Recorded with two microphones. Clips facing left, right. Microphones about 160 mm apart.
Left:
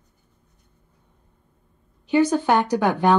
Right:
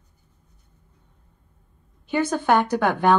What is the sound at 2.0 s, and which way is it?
Speech, 10° left (ahead or behind).